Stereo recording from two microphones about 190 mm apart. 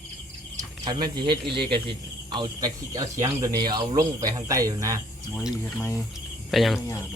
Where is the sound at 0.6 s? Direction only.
25° right (ahead or behind).